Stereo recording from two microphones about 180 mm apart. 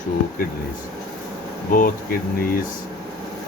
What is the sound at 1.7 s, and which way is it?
Speech, 55° left (ahead or behind).